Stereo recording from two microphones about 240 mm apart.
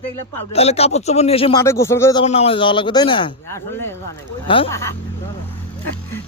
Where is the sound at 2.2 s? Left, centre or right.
Left; by 3.9 s centre.